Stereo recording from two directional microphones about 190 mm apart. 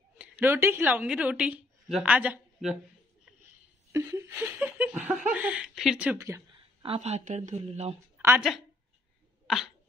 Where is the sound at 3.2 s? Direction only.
10° right (ahead or behind).